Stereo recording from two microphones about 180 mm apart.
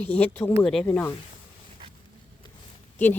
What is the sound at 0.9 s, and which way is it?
Speech, 15° left (ahead or behind).